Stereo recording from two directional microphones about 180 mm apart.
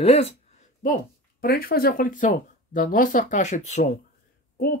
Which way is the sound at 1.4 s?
55° left (ahead or behind).